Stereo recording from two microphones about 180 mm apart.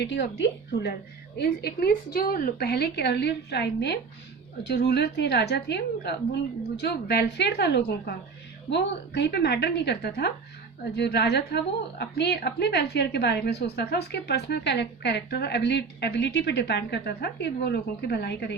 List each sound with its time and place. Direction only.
0.0 s a woman's voice: 75° left (ahead or behind)
1.4 s a woman's voice: 55° left (ahead or behind)